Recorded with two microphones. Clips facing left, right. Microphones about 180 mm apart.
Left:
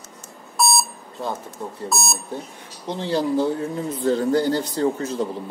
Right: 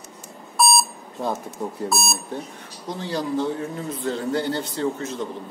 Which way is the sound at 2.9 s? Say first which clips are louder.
Left 4 dB; 30° left (ahead or behind).